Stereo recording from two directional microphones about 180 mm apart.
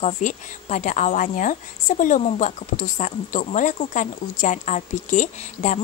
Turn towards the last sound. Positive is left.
turn(degrees=45)  # may be behind; listen again after turning